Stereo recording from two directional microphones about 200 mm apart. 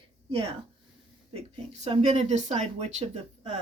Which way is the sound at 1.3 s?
30° right (ahead or behind).